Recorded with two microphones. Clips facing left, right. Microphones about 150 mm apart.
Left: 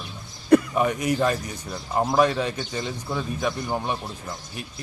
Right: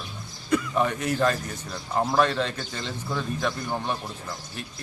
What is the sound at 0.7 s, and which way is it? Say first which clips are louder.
Speech: left 2 dB; 10° left (ahead or behind).